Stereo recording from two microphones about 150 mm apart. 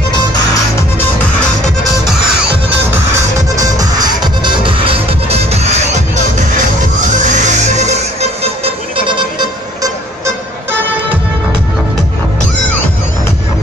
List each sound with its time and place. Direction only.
2.9 s music: 20° right (ahead or behind); by 5.8 s 45° right (ahead or behind)
7.2 s music: 50° right (ahead or behind)
9.8 s music: 20° right (ahead or behind)